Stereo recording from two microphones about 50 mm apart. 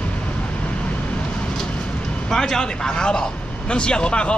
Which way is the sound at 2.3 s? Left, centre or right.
Centre.